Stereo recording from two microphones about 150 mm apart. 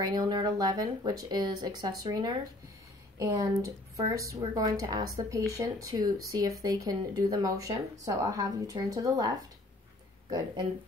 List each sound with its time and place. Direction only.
0.0 s speech: 30° right (ahead or behind)